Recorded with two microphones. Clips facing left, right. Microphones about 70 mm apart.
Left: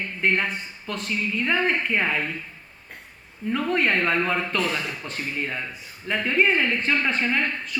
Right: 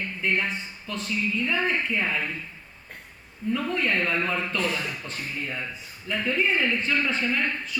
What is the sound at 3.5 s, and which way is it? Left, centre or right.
Speech, left.